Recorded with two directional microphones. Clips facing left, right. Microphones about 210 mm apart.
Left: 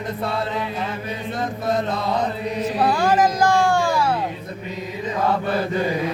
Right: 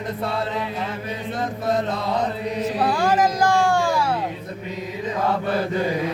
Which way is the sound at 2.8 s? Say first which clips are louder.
Left 2 dB; 5° right (ahead or behind).